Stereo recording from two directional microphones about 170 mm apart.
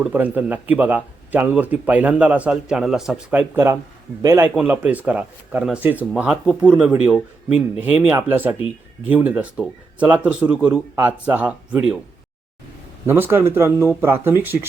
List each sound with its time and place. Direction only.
0.0 s a man's voice: 10° right (ahead or behind)
13.1 s a man's voice: 15° right (ahead or behind)